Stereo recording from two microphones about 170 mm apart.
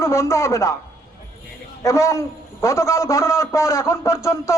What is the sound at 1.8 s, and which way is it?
A man's voice, 15° left (ahead or behind).